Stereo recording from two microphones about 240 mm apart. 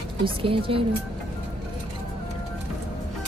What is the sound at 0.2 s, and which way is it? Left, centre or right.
Speech, right.